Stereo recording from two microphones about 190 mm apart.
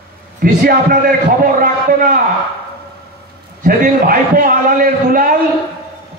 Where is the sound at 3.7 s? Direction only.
50° right (ahead or behind).